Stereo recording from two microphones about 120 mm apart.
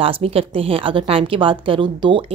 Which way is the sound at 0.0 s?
50° right (ahead or behind).